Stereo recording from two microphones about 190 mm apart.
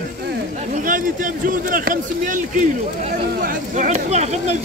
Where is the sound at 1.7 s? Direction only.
45° right (ahead or behind).